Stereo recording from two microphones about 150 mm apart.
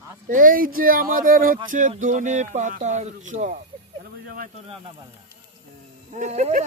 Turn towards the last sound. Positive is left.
turn(degrees=-50)  # may be behind; listen again after turning